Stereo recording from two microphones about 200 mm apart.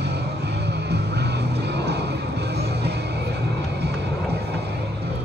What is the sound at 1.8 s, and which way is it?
Vehicle, 55° right (ahead or behind).